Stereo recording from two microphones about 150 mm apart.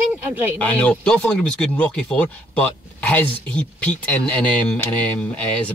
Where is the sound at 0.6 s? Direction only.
5° left (ahead or behind).